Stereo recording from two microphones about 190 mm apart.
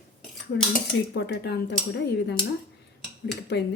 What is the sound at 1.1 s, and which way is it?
Speech, 60° left (ahead or behind).